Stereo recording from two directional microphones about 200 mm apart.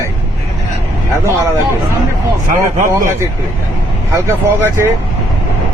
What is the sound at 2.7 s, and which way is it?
Speech, 40° right (ahead or behind).